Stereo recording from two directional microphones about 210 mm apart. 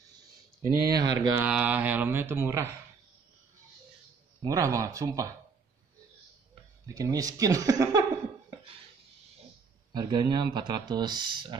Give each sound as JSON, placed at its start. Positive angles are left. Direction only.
{"t": 0.1, "sound": "a sound", "side_deg": -15}
{"t": 1.4, "sound": "speech", "side_deg": -5}
{"t": 4.4, "sound": "speech", "side_deg": -15}
{"t": 6.9, "sound": "speech", "side_deg": -15}
{"t": 9.9, "sound": "speech", "side_deg": -20}